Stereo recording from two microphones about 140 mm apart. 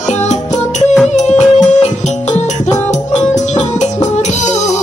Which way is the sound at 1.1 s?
55° left (ahead or behind).